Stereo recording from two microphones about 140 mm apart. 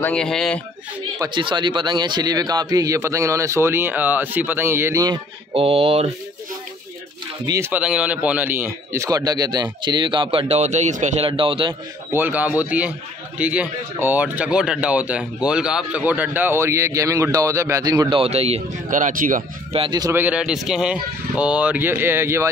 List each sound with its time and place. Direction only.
0.0 s speech: 5° left (ahead or behind)
1.2 s a man's voice: 35° right (ahead or behind)
5.5 s speech: 40° right (ahead or behind)
7.4 s a man's voice: 20° right (ahead or behind)
7.7 s a man's voice: 10° right (ahead or behind); by 11.2 s 60° right (ahead or behind)
11.2 s a man's voice: 40° right (ahead or behind)
12.1 s speech: 15° right (ahead or behind)
18.1 s speech: 45° right (ahead or behind)
18.9 s speech: 70° right (ahead or behind)
19.9 s a man's voice: 25° right (ahead or behind)
20.2 s speech: 10° right (ahead or behind)